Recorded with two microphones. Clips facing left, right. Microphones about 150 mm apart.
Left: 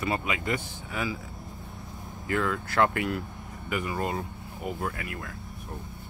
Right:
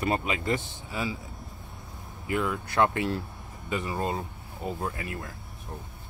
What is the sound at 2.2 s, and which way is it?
Speech, 20° right (ahead or behind).